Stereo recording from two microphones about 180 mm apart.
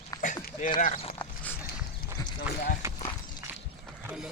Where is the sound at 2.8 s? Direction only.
15° right (ahead or behind).